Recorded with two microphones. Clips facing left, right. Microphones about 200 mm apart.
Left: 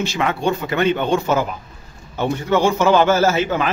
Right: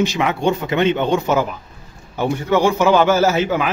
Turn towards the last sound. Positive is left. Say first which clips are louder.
# right 1 dB
turn(degrees=-10)  # may be behind; listen again after turning